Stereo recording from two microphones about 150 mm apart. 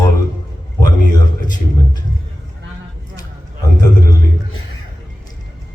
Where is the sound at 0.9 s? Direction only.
25° left (ahead or behind).